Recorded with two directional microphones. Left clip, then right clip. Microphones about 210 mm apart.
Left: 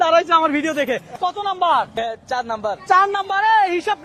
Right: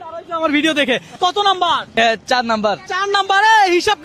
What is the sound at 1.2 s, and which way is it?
Speech, 45° right (ahead or behind).